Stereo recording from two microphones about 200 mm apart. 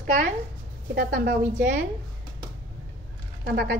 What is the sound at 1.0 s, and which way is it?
Speech, 50° right (ahead or behind).